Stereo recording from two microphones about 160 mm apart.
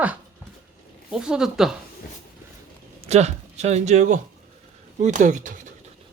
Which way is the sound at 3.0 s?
40° right (ahead or behind).